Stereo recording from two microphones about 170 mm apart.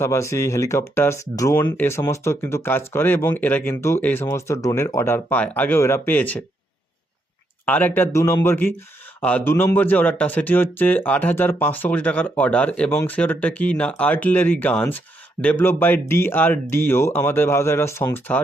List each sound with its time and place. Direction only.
0.0 s speech: 15° left (ahead or behind)
7.6 s speech: 10° left (ahead or behind)